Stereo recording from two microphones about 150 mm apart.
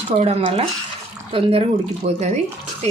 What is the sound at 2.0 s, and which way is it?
Speech, 50° right (ahead or behind).